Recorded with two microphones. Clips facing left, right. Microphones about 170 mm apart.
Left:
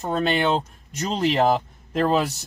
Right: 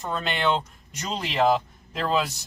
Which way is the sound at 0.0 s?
35° left (ahead or behind).